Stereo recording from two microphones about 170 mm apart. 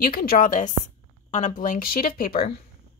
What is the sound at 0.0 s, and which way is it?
Speech, 60° left (ahead or behind).